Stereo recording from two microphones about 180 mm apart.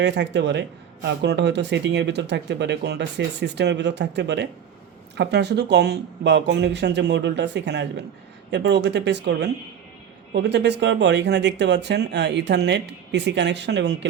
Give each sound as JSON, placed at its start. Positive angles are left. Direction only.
{"t": 0.0, "sound": "speech", "side_deg": -75}